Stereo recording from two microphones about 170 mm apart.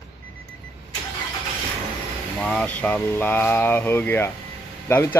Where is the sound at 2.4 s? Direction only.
5° left (ahead or behind).